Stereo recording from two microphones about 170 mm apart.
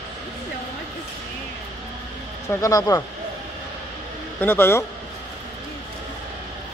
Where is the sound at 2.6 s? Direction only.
20° left (ahead or behind).